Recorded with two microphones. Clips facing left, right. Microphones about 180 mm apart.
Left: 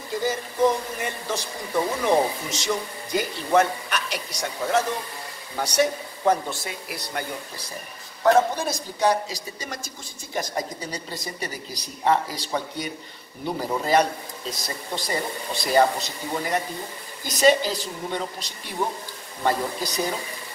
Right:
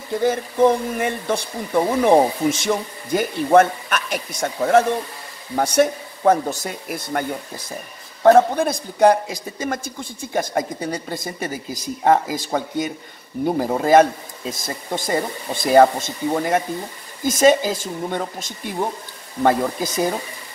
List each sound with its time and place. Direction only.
0.2 s a man's voice: 55° right (ahead or behind)